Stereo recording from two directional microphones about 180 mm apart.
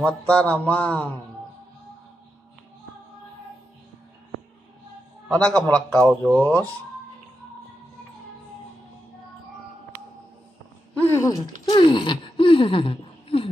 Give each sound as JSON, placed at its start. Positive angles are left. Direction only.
{"t": 0.0, "sound": "mantra", "side_deg": 5}
{"t": 5.3, "sound": "a man's voice", "side_deg": 5}
{"t": 11.0, "sound": "mantra", "side_deg": 15}
{"t": 11.7, "sound": "speech", "side_deg": 25}